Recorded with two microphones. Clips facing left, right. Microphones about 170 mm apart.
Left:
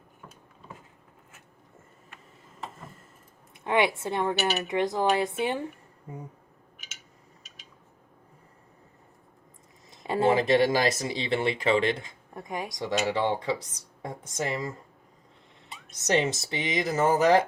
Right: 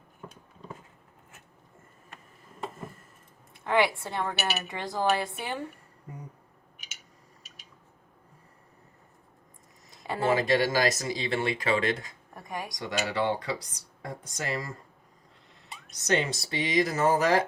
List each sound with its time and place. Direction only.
3.5 s speech: 20° left (ahead or behind)
7.4 s a sound: centre (ahead or behind)
10.0 s speech: 25° left (ahead or behind)
16.0 s speech: 20° left (ahead or behind)